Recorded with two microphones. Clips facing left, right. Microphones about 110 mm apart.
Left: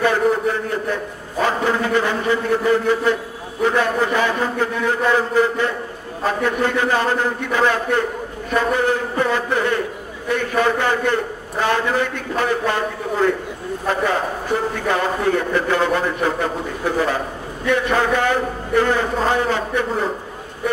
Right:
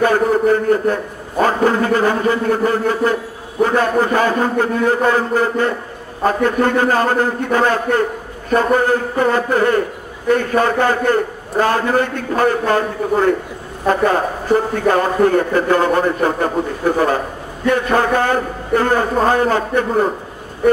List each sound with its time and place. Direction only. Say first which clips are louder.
0.0 s a man's voice: right 3 dB; 45° right (ahead or behind)